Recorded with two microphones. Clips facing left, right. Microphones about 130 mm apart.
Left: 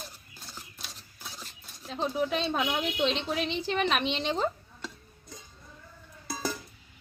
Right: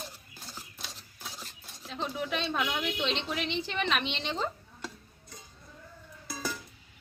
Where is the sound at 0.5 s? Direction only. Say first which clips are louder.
Right 1 dB; 5° right (ahead or behind).